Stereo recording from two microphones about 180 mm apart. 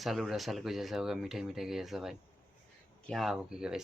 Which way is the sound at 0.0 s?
Centre (ahead or behind).